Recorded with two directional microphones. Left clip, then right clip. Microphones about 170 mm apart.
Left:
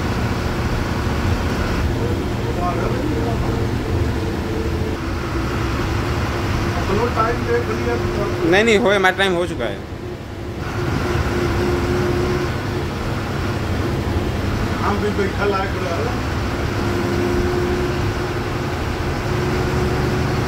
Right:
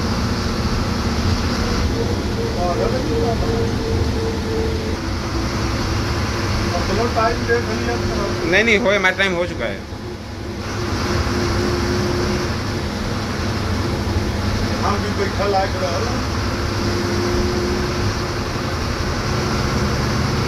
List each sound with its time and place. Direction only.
8.5 s speech: 35° left (ahead or behind)